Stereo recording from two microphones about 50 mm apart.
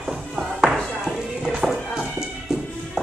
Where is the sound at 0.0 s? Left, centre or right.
Centre.